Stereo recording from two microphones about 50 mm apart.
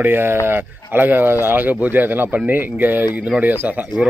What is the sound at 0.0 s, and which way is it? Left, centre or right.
Speech, right.